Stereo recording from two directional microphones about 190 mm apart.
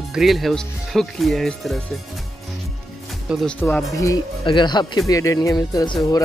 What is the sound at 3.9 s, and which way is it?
Speech, 15° left (ahead or behind).